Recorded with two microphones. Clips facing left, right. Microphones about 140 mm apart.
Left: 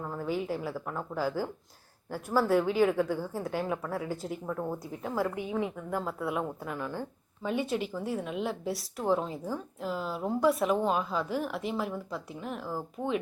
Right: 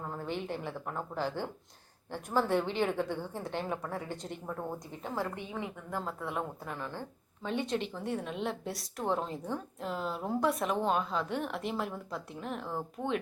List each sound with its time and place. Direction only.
0.1 s a woman's voice: 5° left (ahead or behind)